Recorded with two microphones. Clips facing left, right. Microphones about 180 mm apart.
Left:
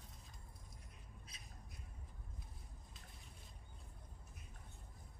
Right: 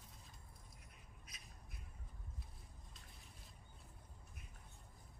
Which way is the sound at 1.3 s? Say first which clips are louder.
Left 1 dB; 30° left (ahead or behind).